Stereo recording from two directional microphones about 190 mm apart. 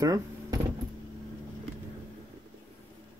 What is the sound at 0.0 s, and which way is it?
Vehicle, 20° right (ahead or behind).